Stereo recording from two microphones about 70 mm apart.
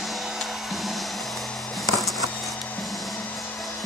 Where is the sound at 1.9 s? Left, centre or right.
Centre.